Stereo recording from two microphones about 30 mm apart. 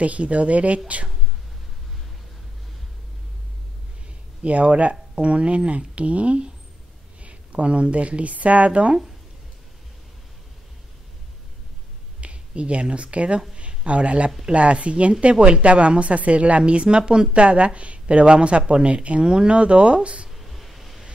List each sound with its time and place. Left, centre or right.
0.0 s speech: right
4.4 s speech: right
5.1 s a woman's voice: right
12.2 s speech: right
15.3 s speech: right
15.6 s a woman's voice: right
20.2 s a sound: centre